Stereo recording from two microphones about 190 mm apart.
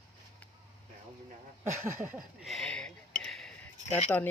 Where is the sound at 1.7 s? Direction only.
15° right (ahead or behind).